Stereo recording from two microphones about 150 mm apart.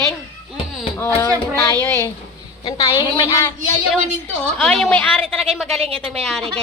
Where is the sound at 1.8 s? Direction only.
20° left (ahead or behind).